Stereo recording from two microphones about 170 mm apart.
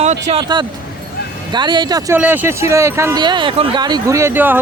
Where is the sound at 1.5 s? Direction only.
25° right (ahead or behind).